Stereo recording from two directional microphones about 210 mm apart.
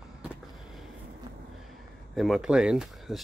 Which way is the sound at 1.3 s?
20° right (ahead or behind).